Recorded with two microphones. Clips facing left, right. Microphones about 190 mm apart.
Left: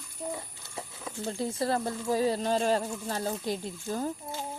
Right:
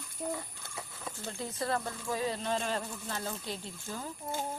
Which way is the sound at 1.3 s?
30° left (ahead or behind).